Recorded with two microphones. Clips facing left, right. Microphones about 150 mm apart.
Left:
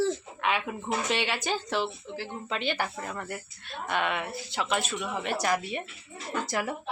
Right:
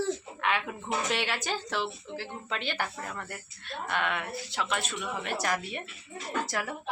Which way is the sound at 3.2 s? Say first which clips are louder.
Left 4 dB; 15° left (ahead or behind).